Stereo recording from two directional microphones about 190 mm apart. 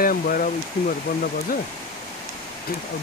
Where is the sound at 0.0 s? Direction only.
50° left (ahead or behind).